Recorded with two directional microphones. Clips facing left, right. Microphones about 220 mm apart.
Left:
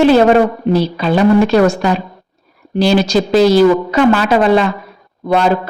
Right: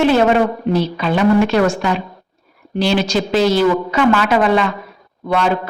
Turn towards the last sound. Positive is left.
turn(degrees=40)  # may be behind; listen again after turning